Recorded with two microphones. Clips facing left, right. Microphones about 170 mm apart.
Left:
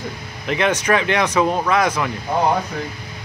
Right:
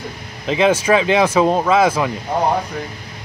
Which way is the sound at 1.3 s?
25° right (ahead or behind).